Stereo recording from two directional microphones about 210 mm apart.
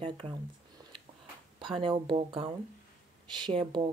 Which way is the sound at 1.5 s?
25° right (ahead or behind).